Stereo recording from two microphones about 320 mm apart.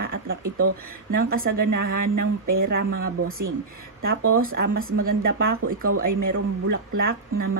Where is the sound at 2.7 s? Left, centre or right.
Right.